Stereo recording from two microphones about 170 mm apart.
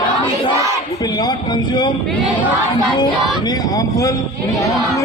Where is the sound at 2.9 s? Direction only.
25° left (ahead or behind).